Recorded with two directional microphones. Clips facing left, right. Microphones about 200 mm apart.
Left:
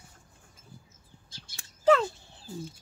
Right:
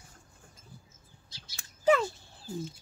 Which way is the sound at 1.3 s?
50° left (ahead or behind).